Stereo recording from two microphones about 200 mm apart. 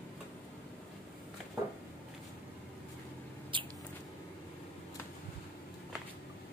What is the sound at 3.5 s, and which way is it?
Mouse, 25° right (ahead or behind).